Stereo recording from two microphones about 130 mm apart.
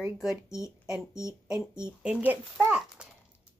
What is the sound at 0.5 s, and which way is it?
Speech, 25° left (ahead or behind).